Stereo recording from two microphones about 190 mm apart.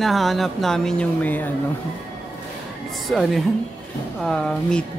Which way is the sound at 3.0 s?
Centre (ahead or behind).